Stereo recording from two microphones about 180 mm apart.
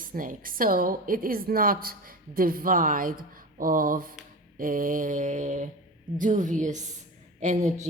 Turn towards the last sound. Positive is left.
turn(degrees=-40)  # may be behind; listen again after turning